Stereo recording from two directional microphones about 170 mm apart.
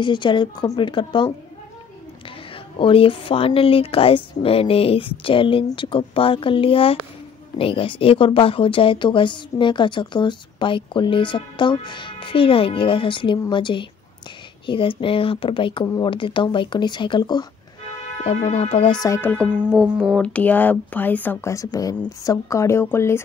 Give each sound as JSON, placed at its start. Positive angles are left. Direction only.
{"t": 0.0, "sound": "speech", "side_deg": 25}
{"t": 2.8, "sound": "speech", "side_deg": 30}
{"t": 18.2, "sound": "speech", "side_deg": 40}
{"t": 19.3, "sound": "a woman's voice", "side_deg": 5}